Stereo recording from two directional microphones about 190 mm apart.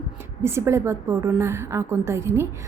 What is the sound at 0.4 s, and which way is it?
A woman's voice, 15° right (ahead or behind).